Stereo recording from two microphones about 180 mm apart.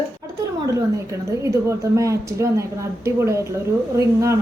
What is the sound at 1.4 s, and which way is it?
Speech, 15° right (ahead or behind).